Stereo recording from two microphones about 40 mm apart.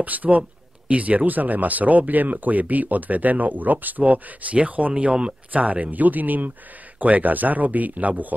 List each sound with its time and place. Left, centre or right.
0.0 s speech: right
4.9 s speech: right
5.5 s speech: right